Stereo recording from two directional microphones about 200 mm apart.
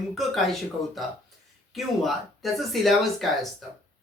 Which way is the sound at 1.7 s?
Centre (ahead or behind).